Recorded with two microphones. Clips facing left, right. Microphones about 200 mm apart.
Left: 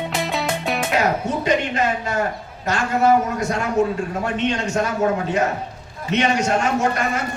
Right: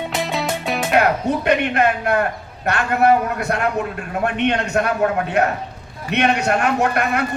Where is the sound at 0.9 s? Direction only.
60° right (ahead or behind).